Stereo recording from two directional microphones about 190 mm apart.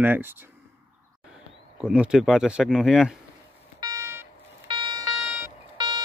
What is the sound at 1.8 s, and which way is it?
Speech, 5° right (ahead or behind).